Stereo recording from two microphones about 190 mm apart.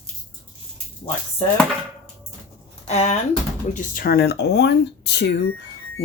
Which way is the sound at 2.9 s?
35° left (ahead or behind).